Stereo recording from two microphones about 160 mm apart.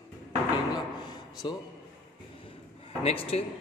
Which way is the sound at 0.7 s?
25° left (ahead or behind).